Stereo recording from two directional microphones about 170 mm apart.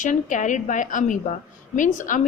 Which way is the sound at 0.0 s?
45° left (ahead or behind).